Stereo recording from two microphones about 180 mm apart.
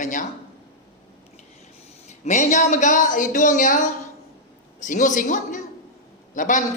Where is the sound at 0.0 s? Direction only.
45° left (ahead or behind).